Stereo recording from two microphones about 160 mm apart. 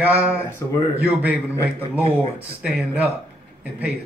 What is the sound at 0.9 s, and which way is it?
Speech, 10° right (ahead or behind).